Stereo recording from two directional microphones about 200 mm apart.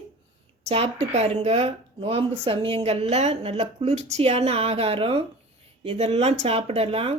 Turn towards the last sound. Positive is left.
turn(degrees=-30)  # may be behind; listen again after turning